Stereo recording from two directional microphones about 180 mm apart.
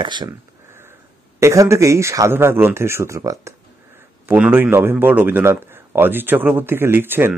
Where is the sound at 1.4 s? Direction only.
15° right (ahead or behind).